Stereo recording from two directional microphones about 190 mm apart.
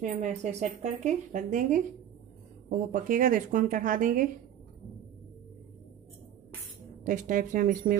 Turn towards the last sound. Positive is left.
turn(degrees=-45)  # may be behind; listen again after turning